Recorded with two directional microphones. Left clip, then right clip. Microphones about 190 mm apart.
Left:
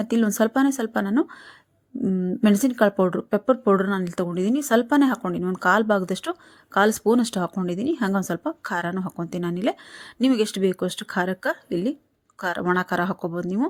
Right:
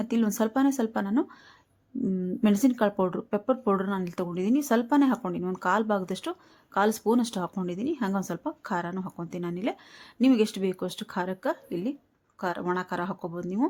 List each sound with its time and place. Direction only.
0.0 s speech: 30° left (ahead or behind)